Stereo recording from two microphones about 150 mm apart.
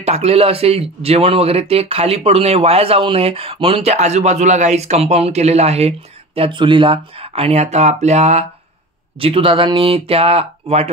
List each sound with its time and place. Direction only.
0.0 s speech: 45° right (ahead or behind)
9.2 s speech: 35° right (ahead or behind)